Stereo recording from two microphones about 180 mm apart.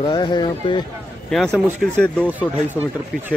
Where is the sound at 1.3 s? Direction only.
Centre (ahead or behind).